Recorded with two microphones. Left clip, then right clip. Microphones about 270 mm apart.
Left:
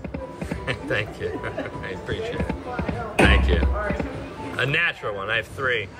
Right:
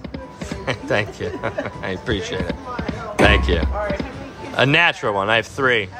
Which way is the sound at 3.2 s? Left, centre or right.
Centre.